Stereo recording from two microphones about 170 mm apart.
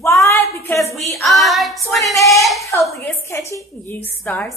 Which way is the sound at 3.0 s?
15° left (ahead or behind).